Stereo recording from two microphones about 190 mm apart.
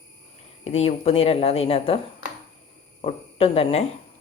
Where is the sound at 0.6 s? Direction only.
35° left (ahead or behind).